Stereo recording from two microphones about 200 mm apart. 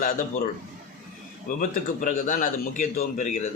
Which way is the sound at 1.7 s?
45° left (ahead or behind).